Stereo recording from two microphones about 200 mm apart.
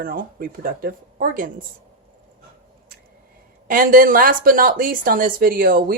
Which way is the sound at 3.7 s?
45° right (ahead or behind).